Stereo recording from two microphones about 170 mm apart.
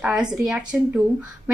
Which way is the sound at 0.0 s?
5° right (ahead or behind).